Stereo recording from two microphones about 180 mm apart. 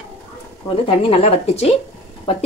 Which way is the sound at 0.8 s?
30° left (ahead or behind).